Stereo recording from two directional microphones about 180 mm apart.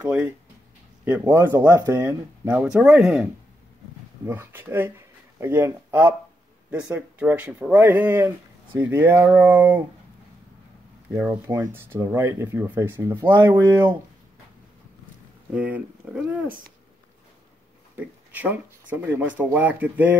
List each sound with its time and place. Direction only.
0.0 s speech: 10° right (ahead or behind)
4.3 s speech: 10° right (ahead or behind)
11.1 s speech: 10° right (ahead or behind)
15.5 s speech: 10° right (ahead or behind)
16.4 s speech: 55° right (ahead or behind)
17.9 s speech: 10° right (ahead or behind)